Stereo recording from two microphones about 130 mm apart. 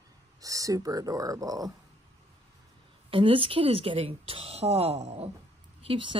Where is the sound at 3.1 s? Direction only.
45° right (ahead or behind).